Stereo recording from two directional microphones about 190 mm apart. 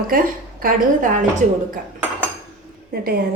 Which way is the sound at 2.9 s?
50° right (ahead or behind).